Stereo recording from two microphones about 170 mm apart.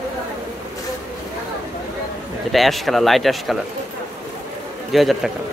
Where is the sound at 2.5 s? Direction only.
Centre (ahead or behind).